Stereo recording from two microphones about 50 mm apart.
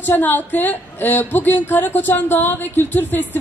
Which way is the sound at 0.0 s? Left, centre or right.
Left.